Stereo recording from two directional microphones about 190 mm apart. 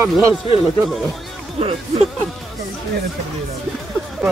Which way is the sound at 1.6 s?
30° right (ahead or behind).